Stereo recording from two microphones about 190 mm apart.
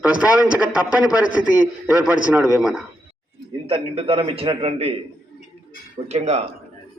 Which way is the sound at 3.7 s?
30° right (ahead or behind).